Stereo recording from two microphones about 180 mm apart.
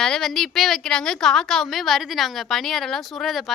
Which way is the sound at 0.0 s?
Centre (ahead or behind).